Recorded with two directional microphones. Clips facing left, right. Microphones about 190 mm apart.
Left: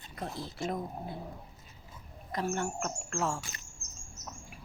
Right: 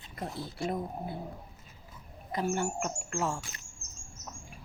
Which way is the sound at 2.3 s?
5° right (ahead or behind).